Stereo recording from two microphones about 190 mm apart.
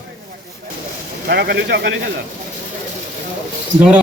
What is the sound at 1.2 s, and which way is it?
Speech, 55° right (ahead or behind).